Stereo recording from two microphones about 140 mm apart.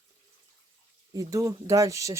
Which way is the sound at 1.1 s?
25° right (ahead or behind).